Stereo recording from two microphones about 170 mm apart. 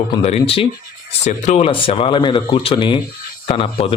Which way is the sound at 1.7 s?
30° left (ahead or behind).